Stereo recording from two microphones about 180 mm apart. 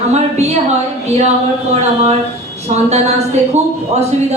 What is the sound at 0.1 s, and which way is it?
Speech, 35° right (ahead or behind).